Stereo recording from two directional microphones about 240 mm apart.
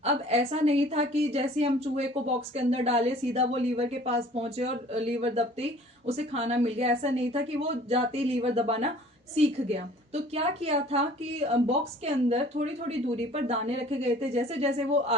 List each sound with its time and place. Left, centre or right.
0.0 s a woman's voice: right